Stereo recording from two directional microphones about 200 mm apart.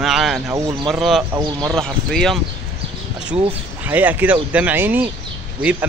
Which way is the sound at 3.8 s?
10° right (ahead or behind).